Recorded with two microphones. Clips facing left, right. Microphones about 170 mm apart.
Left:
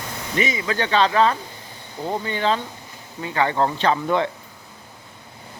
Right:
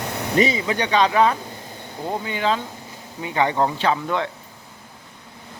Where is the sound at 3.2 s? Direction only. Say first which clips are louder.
Even; 20° right (ahead or behind).